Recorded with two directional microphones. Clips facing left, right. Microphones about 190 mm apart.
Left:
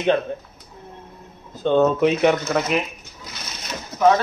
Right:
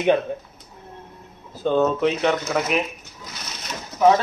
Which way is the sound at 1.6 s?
5° right (ahead or behind).